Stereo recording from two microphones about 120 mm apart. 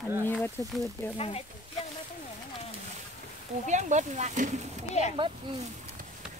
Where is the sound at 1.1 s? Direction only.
55° left (ahead or behind).